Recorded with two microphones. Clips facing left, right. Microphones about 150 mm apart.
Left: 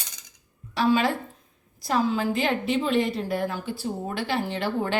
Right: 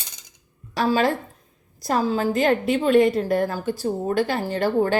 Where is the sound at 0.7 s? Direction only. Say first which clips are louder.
Right 2 dB; 40° right (ahead or behind).